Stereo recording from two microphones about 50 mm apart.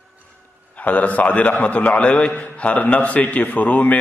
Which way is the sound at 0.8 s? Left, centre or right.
Left.